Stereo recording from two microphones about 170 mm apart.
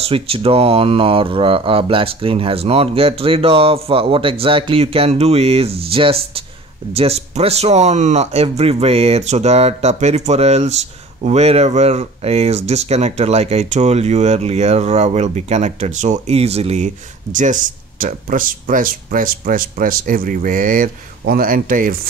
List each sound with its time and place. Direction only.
0.0 s speech: 35° right (ahead or behind); by 21.9 s 55° right (ahead or behind)